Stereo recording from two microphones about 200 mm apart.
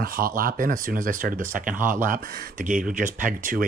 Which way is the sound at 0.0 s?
45° right (ahead or behind).